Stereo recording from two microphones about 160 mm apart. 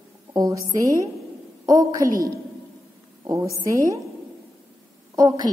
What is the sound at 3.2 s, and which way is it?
Speech, 20° right (ahead or behind).